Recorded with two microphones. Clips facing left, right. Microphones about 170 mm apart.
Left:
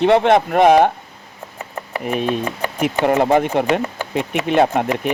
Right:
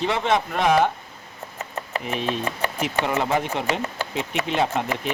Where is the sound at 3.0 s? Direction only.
55° left (ahead or behind).